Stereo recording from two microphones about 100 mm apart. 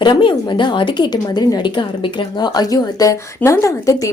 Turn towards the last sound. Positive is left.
turn(degrees=35)  # may be behind; listen again after turning